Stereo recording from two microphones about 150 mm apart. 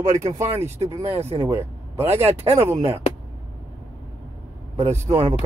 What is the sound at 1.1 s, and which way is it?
Speech, 40° right (ahead or behind).